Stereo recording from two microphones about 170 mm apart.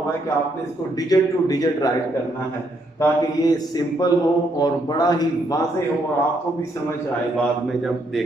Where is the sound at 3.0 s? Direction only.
25° left (ahead or behind).